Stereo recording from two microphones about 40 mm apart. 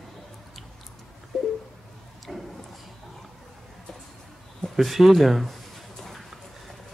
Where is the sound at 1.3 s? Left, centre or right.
Centre.